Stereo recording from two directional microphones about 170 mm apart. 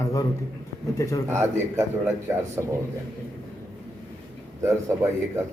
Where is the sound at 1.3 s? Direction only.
15° right (ahead or behind).